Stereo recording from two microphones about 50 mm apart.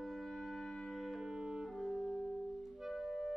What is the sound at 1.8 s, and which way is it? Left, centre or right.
Music, centre.